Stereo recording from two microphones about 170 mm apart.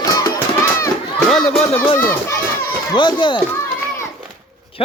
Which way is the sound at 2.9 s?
30° left (ahead or behind).